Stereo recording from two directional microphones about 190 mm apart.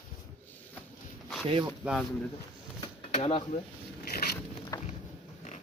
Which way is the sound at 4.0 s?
55° left (ahead or behind).